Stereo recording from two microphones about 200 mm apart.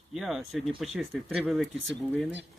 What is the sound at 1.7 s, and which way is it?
Speech, 65° right (ahead or behind).